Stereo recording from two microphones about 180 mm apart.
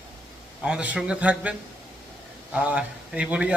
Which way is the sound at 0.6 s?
5° right (ahead or behind).